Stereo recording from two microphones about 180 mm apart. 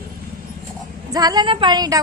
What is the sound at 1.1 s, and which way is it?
Speech, 20° right (ahead or behind).